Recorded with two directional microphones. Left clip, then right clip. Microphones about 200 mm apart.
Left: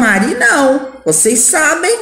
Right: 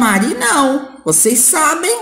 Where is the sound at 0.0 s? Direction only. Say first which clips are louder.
Left 4 dB; 60° right (ahead or behind).